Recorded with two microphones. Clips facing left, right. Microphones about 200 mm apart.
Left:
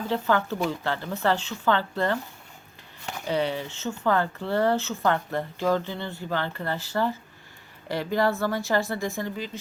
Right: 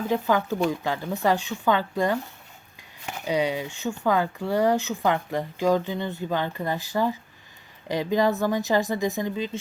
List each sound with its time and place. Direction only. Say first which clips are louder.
0.1 s speech: right 1 dB; 15° right (ahead or behind)
3.2 s speech: right 2 dB; 15° right (ahead or behind)